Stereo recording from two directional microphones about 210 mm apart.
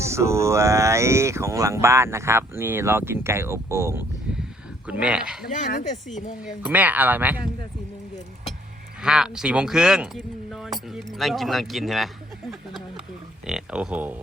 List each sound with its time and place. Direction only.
0.0 s speech: 15° right (ahead or behind)
5.5 s speech: 40° left (ahead or behind)
6.7 s speech: 10° right (ahead or behind)
9.0 s speech: 5° right (ahead or behind)